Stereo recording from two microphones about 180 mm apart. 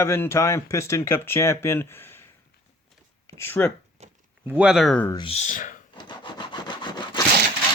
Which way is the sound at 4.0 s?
35° right (ahead or behind).